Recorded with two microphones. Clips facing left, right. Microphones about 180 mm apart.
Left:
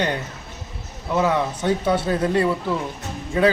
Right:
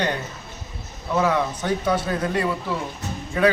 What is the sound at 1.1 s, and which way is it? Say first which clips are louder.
Speech: left 1 dB; 25° left (ahead or behind).